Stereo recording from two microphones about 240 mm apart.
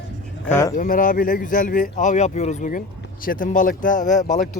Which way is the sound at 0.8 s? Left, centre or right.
Left.